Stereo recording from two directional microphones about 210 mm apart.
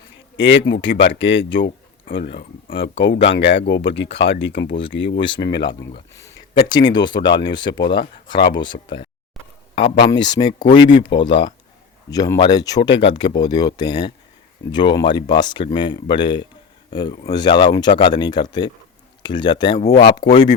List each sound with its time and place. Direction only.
0.3 s speech: 60° left (ahead or behind)
2.4 s speech: 25° left (ahead or behind)
2.8 s speech: 55° left (ahead or behind)
6.1 s speech: 20° left (ahead or behind)
7.7 s speech: 55° left (ahead or behind)
8.6 s speech: 20° left (ahead or behind)
10.1 s speech: 20° left (ahead or behind)
10.8 s speech: 55° left (ahead or behind)
12.1 s speech: 20° left (ahead or behind)